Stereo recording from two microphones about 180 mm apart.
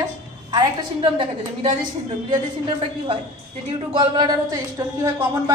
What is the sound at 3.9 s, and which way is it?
A woman's voice, 25° right (ahead or behind).